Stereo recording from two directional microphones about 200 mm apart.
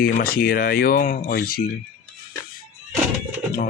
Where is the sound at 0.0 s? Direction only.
50° left (ahead or behind).